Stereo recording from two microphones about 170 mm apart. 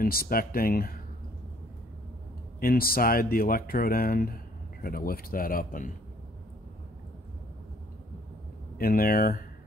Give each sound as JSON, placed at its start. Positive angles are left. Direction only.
{"t": 0.0, "sound": "speech", "side_deg": 60}
{"t": 2.6, "sound": "speech", "side_deg": 60}
{"t": 8.7, "sound": "speech", "side_deg": 60}